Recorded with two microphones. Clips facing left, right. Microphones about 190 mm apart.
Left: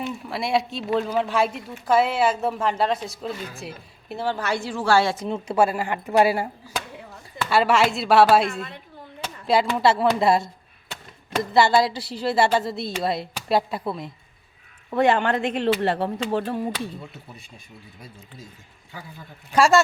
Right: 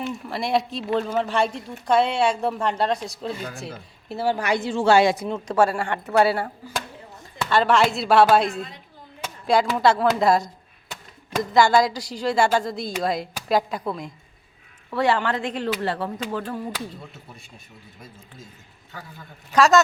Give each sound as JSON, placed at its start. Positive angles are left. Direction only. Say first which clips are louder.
{"t": 0.0, "sound": "speech", "louder": "even", "side_deg": 0}
{"t": 4.1, "sound": "a woman's voice", "louder": "right 3 dB", "side_deg": -10}
{"t": 5.3, "sound": "speech", "louder": "even", "side_deg": 5}
{"t": 6.1, "sound": "speech", "louder": "even", "side_deg": 15}
{"t": 7.5, "sound": "speech", "louder": "even", "side_deg": 5}
{"t": 14.9, "sound": "speech", "louder": "left 2 dB", "side_deg": 20}
{"t": 19.5, "sound": "speech", "louder": "right 1 dB", "side_deg": 10}